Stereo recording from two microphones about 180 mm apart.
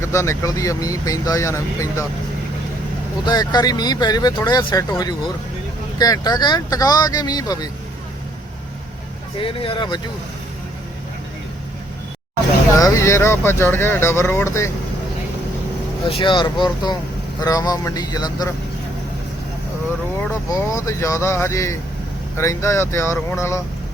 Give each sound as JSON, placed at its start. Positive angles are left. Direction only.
{"t": 0.0, "sound": "speech", "side_deg": 15}
{"t": 3.2, "sound": "speech", "side_deg": 20}
{"t": 9.4, "sound": "speech", "side_deg": 30}
{"t": 12.8, "sound": "speech", "side_deg": 15}
{"t": 16.0, "sound": "speech", "side_deg": 30}
{"t": 20.5, "sound": "speech", "side_deg": 15}